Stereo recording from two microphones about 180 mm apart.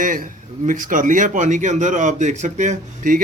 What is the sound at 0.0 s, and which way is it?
A man's voice, 50° right (ahead or behind).